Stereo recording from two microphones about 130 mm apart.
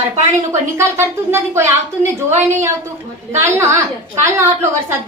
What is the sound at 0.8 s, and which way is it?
A woman's voice, 20° right (ahead or behind).